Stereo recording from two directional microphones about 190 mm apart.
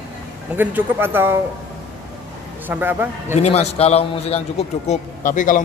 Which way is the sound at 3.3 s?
35° left (ahead or behind).